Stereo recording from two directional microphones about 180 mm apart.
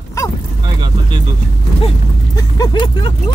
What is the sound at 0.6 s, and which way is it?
Speech, 25° right (ahead or behind).